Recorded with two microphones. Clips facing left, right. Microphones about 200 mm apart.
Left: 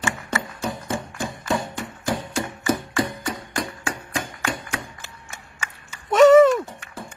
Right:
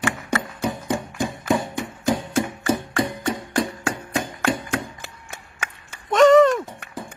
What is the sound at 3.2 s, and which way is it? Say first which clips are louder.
Music: right 5 dB; 25° right (ahead or behind).